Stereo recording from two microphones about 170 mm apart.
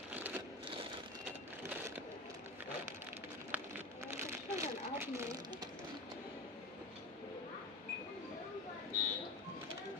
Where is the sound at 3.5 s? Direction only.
15° right (ahead or behind).